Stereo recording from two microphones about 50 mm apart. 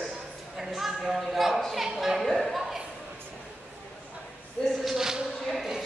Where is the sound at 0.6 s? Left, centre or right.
Centre.